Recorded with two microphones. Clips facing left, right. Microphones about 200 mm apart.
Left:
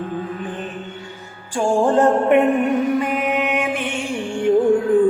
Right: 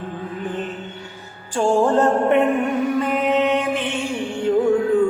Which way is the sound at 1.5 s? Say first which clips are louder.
Even; 15° left (ahead or behind).